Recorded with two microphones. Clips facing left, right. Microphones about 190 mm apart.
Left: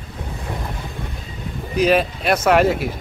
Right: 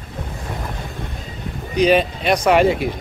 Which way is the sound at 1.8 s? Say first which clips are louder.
Right 1 dB; 5° left (ahead or behind).